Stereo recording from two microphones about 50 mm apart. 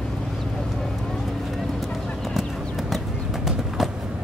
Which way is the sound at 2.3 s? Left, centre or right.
Centre.